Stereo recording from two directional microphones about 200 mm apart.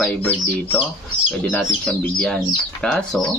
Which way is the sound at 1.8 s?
Centre (ahead or behind).